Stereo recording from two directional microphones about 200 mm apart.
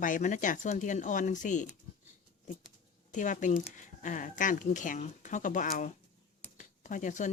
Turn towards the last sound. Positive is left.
turn(degrees=40)  # may be behind; listen again after turning